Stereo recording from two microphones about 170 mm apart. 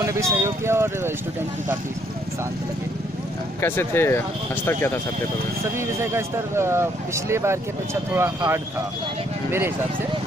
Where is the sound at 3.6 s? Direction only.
15° left (ahead or behind).